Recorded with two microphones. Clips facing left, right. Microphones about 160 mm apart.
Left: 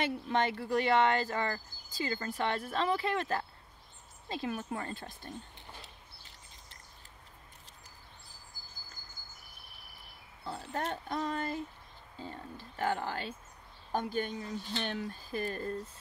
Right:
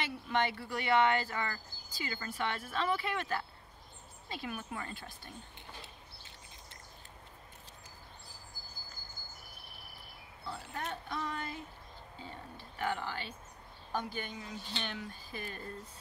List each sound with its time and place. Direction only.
0.3 s speech: 35° left (ahead or behind)
10.4 s a sound: 35° left (ahead or behind)
11.1 s speech: 40° left (ahead or behind)
12.7 s speech: 40° left (ahead or behind)